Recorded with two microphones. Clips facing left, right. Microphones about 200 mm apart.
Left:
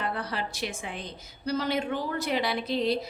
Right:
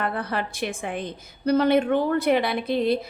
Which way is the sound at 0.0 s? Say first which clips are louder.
Right 5 dB; 55° right (ahead or behind).